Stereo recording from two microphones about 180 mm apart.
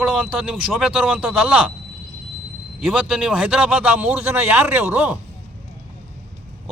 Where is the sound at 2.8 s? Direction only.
5° right (ahead or behind).